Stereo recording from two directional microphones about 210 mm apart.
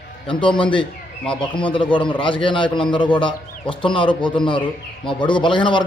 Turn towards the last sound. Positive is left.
turn(degrees=25)  # may be behind; listen again after turning